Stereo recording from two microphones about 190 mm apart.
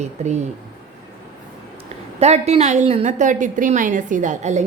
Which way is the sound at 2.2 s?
35° right (ahead or behind).